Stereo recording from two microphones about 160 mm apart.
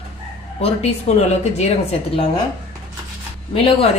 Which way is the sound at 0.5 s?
40° left (ahead or behind).